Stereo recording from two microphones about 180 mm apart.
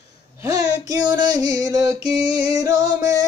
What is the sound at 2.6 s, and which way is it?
Singing, 20° right (ahead or behind).